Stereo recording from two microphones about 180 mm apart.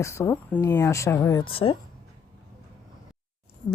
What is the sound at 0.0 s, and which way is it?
Speech, 15° left (ahead or behind).